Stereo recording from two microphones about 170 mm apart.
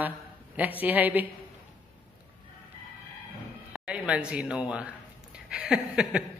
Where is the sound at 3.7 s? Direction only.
5° right (ahead or behind).